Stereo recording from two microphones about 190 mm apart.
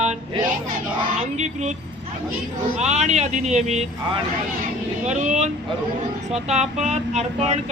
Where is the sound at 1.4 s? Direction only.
35° right (ahead or behind).